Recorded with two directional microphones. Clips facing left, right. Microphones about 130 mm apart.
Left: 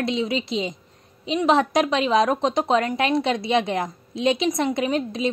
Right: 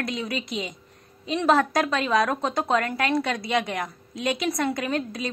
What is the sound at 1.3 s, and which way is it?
A woman's voice, 15° left (ahead or behind).